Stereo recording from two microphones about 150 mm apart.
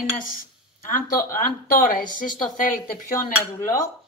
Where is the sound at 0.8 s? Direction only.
65° left (ahead or behind).